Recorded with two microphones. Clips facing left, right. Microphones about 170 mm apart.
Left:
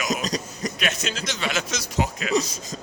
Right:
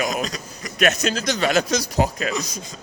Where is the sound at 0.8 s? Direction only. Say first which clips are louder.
Right 11 dB; 40° right (ahead or behind).